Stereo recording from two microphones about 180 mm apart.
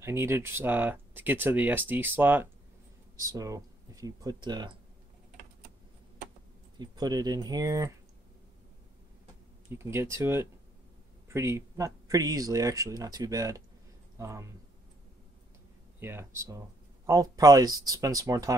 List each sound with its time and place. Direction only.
0.0 s speech: 15° right (ahead or behind)
6.8 s speech: 20° right (ahead or behind)
9.7 s speech: 15° right (ahead or behind)
16.0 s speech: 15° right (ahead or behind)